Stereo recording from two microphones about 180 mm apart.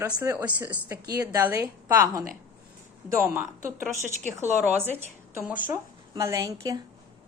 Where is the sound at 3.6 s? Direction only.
45° right (ahead or behind).